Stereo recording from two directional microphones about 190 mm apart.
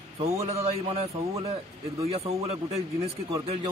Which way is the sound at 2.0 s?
30° right (ahead or behind).